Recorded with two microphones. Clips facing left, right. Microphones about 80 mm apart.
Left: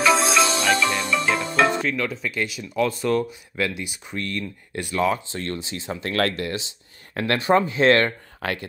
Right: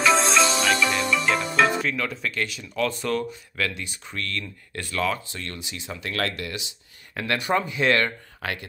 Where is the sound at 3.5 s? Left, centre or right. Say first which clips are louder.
Left 4 dB; centre.